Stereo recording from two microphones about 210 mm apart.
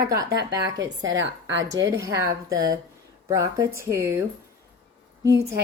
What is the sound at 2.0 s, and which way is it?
Speech, 15° right (ahead or behind).